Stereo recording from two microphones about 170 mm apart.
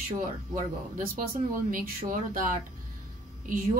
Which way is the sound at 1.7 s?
50° right (ahead or behind).